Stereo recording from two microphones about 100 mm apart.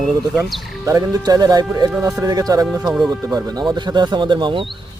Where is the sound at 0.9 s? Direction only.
35° right (ahead or behind).